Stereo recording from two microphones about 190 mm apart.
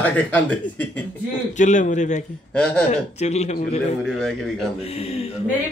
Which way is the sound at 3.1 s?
35° left (ahead or behind).